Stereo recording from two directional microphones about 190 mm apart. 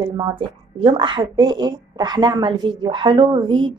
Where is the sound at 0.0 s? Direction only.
25° right (ahead or behind).